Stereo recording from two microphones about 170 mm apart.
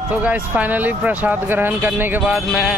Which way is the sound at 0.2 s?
10° right (ahead or behind).